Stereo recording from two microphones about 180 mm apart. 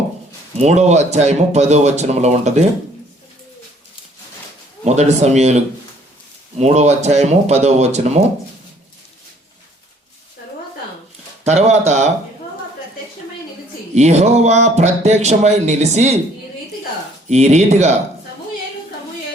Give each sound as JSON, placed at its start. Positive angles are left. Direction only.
{"t": 0.6, "sound": "speech", "side_deg": -40}
{"t": 4.9, "sound": "speech", "side_deg": -40}
{"t": 11.4, "sound": "speech", "side_deg": -40}
{"t": 13.9, "sound": "speech", "side_deg": -40}
{"t": 17.2, "sound": "speech", "side_deg": -40}